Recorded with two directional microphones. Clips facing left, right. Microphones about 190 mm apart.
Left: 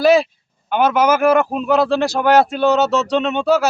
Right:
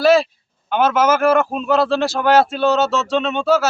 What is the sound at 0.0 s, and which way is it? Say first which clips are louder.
Speech: left 1 dB; 15° left (ahead or behind).